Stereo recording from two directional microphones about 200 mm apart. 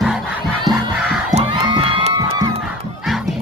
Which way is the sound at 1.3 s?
25° right (ahead or behind).